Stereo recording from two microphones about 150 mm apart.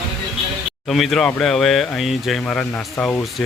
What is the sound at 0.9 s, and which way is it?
Speech, centre (ahead or behind).